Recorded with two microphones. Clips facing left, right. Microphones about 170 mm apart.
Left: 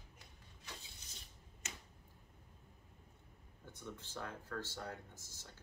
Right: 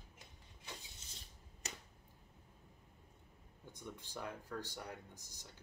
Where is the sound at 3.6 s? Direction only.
15° right (ahead or behind).